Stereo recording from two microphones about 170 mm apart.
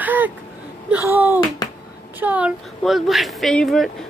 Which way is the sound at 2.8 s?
Centre (ahead or behind).